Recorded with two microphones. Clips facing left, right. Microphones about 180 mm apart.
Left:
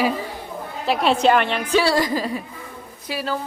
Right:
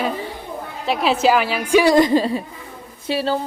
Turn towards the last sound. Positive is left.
turn(degrees=-30)  # may be behind; listen again after turning